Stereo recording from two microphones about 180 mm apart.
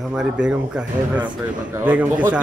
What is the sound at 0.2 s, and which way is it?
A man's voice, 5° right (ahead or behind).